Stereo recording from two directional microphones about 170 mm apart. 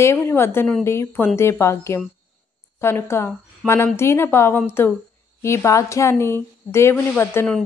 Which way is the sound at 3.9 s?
15° left (ahead or behind).